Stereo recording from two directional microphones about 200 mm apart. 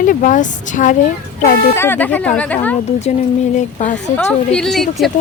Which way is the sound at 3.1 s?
35° left (ahead or behind).